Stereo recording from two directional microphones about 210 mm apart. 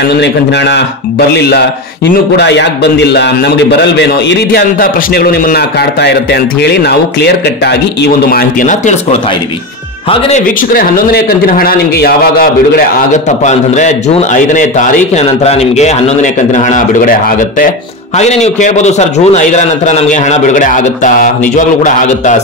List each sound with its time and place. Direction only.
0.1 s a man's voice: 55° left (ahead or behind)
2.3 s a man's voice: 55° left (ahead or behind); by 8.9 s 40° left (ahead or behind)
10.0 s speech: 30° left (ahead or behind)
10.7 s a man's voice: 45° left (ahead or behind)